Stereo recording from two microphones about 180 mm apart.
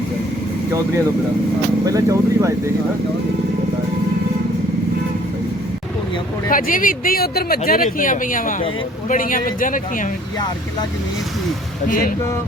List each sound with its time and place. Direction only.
1.8 s speech: 20° right (ahead or behind)
6.5 s speech: 50° left (ahead or behind)
11.9 s speech: 50° left (ahead or behind)